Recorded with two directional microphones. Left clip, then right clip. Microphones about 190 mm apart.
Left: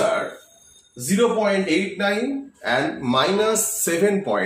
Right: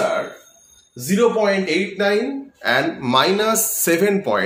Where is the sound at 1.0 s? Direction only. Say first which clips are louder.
Right 3 dB; 60° right (ahead or behind).